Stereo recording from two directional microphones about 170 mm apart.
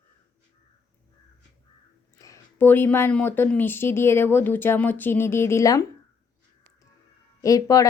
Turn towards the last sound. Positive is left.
turn(degrees=20)  # may be behind; listen again after turning